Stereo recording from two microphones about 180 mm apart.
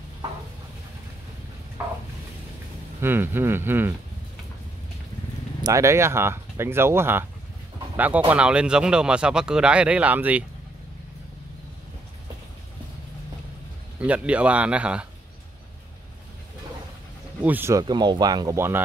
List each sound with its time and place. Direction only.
1.8 s a sound: 10° right (ahead or behind)
3.0 s speech: 10° right (ahead or behind)
5.6 s speech: 15° right (ahead or behind)
13.9 s speech: 5° right (ahead or behind)
17.4 s speech: 10° right (ahead or behind)